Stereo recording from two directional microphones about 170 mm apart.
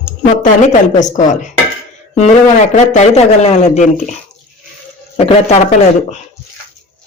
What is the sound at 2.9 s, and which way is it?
Speech, 40° left (ahead or behind).